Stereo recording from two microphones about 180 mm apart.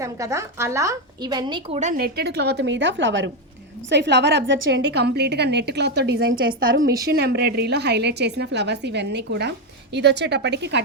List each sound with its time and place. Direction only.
0.0 s a woman's voice: 15° right (ahead or behind)
1.8 s a woman's voice: 50° right (ahead or behind); by 3.3 s 90° right
3.8 s a woman's voice: 75° right (ahead or behind)